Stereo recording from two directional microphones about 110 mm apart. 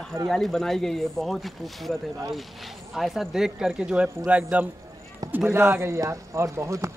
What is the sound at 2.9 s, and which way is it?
Speech, centre (ahead or behind).